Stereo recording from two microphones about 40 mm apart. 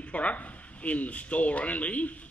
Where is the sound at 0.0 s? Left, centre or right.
Left.